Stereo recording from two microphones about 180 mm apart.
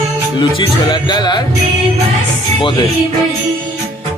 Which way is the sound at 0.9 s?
25° left (ahead or behind).